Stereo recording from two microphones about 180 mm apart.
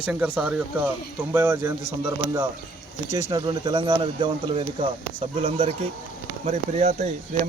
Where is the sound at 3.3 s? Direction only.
25° right (ahead or behind).